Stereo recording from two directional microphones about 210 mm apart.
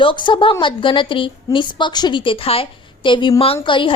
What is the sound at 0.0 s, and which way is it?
A woman's voice, 25° left (ahead or behind).